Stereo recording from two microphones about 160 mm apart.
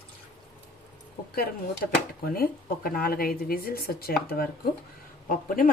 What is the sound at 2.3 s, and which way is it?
Speech, 65° left (ahead or behind).